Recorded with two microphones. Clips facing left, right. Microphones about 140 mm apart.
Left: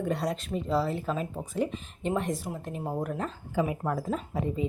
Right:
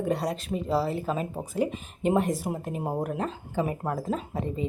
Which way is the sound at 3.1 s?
5° right (ahead or behind).